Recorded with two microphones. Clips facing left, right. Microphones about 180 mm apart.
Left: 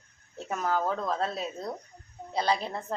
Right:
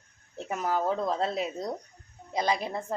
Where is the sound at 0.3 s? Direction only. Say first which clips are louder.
Even; 15° right (ahead or behind).